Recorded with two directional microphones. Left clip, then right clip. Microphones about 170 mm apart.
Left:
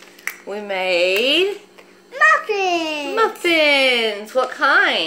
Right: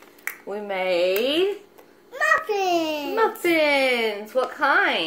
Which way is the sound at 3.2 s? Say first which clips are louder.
Left 4 dB; 10° left (ahead or behind).